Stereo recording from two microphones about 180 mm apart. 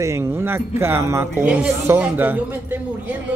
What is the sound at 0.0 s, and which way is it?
Speech, 15° right (ahead or behind).